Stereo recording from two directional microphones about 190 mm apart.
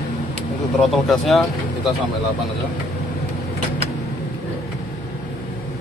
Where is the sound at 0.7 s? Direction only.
Centre (ahead or behind).